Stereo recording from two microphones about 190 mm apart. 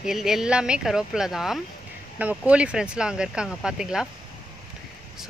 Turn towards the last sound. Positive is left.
turn(degrees=-5)  # may be behind; listen again after turning